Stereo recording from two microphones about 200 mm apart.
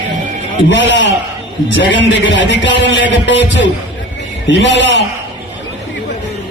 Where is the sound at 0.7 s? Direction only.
65° left (ahead or behind).